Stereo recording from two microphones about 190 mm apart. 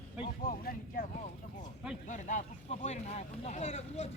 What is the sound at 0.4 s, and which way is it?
Vehicle, 50° left (ahead or behind).